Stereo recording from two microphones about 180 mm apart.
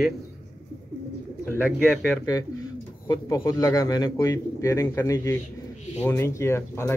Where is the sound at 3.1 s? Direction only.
20° left (ahead or behind).